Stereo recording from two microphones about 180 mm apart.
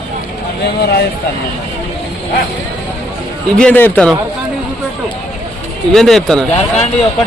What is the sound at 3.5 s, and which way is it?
Speech, 10° left (ahead or behind).